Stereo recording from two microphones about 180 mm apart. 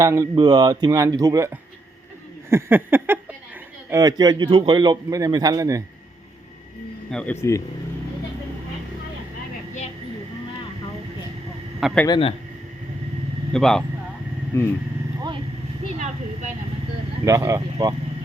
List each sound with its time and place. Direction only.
0.0 s a man's voice: 15° right (ahead or behind)
2.5 s a sound: 10° right (ahead or behind)
3.8 s a man's voice: 20° right (ahead or behind)
7.1 s speech: 5° left (ahead or behind)
11.8 s a man's voice: centre (ahead or behind)
12.0 s a man's voice: 25° left (ahead or behind)
13.5 s speech: 5° left (ahead or behind)
14.5 s speech: 15° left (ahead or behind)
17.2 s a sound: 15° right (ahead or behind)